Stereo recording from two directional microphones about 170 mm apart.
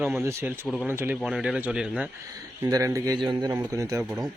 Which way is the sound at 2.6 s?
20° right (ahead or behind).